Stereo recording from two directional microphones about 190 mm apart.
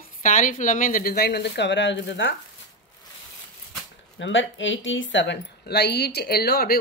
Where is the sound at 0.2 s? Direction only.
45° left (ahead or behind); by 2.3 s 70° left (ahead or behind).